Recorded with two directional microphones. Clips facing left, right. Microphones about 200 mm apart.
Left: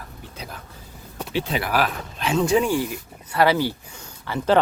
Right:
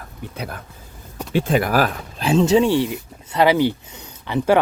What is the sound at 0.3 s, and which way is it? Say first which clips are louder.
Speech: right 6 dB; 60° right (ahead or behind).